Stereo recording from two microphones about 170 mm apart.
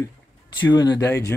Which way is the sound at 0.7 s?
25° left (ahead or behind).